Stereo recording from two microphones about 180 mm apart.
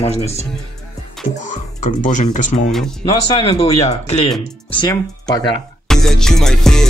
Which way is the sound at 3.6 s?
35° left (ahead or behind).